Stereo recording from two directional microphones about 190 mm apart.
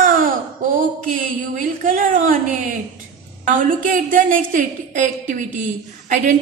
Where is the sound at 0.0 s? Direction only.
45° right (ahead or behind).